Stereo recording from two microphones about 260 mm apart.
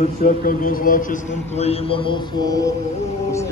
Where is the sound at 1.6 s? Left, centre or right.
Left.